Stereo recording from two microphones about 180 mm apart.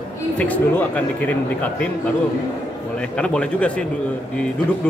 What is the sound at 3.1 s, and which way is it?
Speech, 5° left (ahead or behind).